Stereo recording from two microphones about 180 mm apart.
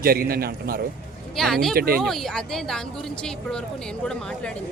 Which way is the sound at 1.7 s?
55° right (ahead or behind).